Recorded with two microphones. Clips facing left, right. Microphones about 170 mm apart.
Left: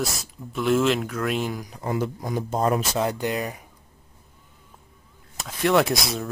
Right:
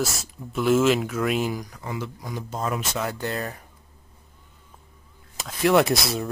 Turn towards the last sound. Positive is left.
turn(degrees=0)  # may be behind; listen again after turning